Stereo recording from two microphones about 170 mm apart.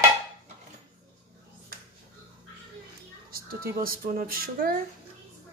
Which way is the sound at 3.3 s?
60° right (ahead or behind).